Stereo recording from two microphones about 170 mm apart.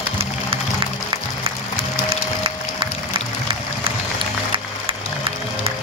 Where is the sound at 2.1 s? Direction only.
30° right (ahead or behind).